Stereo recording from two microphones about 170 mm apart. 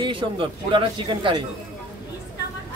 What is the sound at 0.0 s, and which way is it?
A man's voice, 30° right (ahead or behind).